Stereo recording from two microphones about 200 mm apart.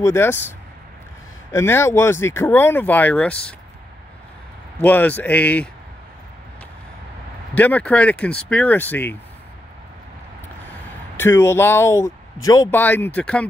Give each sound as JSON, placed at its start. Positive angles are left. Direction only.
{"t": 0.0, "sound": "speech", "side_deg": 10}
{"t": 4.7, "sound": "speech", "side_deg": 10}
{"t": 7.5, "sound": "speech", "side_deg": 10}
{"t": 11.1, "sound": "speech", "side_deg": 10}